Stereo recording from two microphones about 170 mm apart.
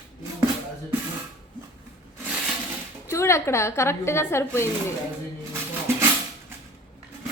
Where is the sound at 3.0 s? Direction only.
15° left (ahead or behind).